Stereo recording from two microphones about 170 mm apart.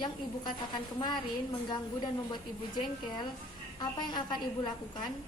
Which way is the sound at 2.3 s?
25° left (ahead or behind).